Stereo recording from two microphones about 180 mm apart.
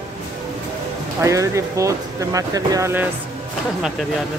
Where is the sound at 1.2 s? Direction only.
15° right (ahead or behind).